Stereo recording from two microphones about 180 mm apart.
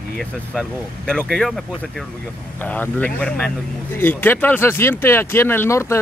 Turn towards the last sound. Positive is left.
turn(degrees=15)  # may be behind; listen again after turning